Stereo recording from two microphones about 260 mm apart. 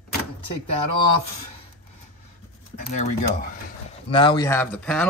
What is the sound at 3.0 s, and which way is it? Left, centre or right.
Speech, left.